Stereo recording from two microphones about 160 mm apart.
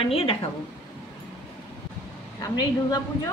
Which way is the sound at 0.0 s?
35° left (ahead or behind).